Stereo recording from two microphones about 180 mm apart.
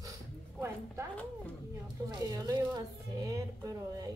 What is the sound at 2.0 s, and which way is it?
Speech, 20° right (ahead or behind).